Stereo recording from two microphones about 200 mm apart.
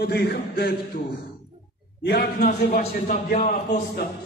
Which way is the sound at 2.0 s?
45° left (ahead or behind).